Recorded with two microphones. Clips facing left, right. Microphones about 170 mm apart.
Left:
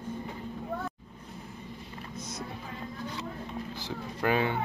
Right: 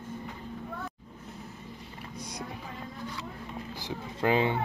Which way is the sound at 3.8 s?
20° right (ahead or behind).